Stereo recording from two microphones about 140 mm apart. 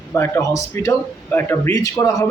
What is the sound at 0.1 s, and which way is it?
A man's voice, 20° left (ahead or behind).